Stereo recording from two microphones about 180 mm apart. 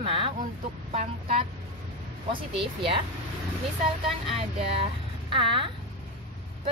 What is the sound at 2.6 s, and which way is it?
Speech, 30° right (ahead or behind).